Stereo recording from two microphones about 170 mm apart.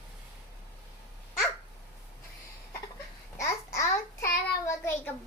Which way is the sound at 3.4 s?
15° left (ahead or behind).